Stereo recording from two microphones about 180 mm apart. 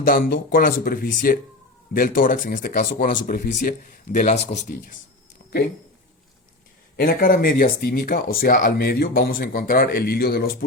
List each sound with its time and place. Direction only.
0.0 s speech: 55° left (ahead or behind)
6.9 s speech: 55° left (ahead or behind)